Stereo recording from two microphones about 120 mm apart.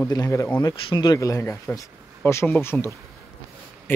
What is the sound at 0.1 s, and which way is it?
Speech, 25° left (ahead or behind).